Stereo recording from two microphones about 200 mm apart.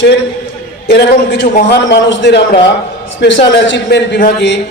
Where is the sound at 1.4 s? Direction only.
50° left (ahead or behind).